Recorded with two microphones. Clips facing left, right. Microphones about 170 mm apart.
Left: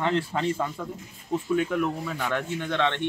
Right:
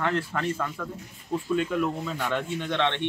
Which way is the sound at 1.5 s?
5° left (ahead or behind).